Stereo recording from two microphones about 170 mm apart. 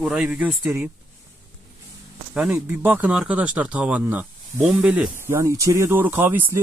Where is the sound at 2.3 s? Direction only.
10° right (ahead or behind).